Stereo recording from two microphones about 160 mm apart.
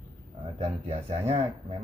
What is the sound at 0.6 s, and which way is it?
Speech, 40° right (ahead or behind).